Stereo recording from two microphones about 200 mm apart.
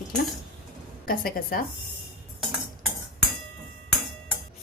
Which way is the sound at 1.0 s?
45° left (ahead or behind).